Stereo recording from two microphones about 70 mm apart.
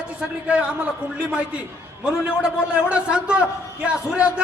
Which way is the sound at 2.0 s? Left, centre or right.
Centre.